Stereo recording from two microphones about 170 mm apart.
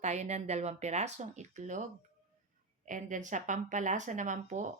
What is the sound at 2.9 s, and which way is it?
Speech, 50° right (ahead or behind).